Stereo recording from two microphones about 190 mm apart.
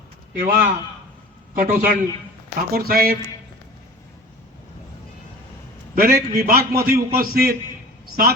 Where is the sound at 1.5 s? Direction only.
50° right (ahead or behind).